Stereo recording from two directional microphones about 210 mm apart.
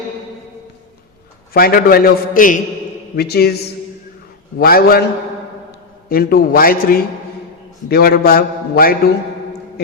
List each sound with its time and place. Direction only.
1.5 s a man's voice: 45° left (ahead or behind)
6.1 s a man's voice: 45° left (ahead or behind)